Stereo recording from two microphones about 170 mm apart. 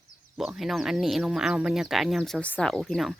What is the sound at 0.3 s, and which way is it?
Speech, centre (ahead or behind).